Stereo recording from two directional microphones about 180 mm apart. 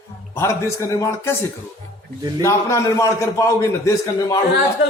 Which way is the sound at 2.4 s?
15° left (ahead or behind).